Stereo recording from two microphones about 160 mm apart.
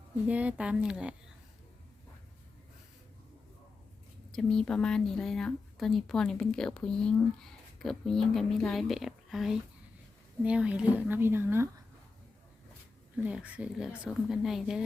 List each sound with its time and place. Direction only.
0.3 s speech: 10° right (ahead or behind)
4.3 s speech: centre (ahead or behind); by 11.7 s 15° right (ahead or behind)
13.1 s speech: 10° right (ahead or behind)